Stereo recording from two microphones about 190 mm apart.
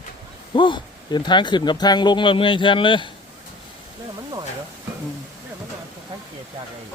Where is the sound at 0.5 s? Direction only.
25° left (ahead or behind).